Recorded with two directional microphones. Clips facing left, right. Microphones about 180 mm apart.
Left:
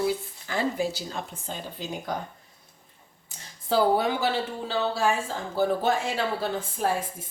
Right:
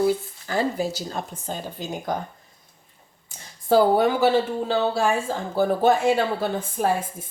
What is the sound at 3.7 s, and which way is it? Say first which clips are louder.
Speech: right 5 dB; 50° right (ahead or behind).